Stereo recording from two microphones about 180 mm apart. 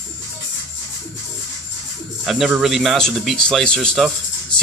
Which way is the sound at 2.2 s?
Centre (ahead or behind).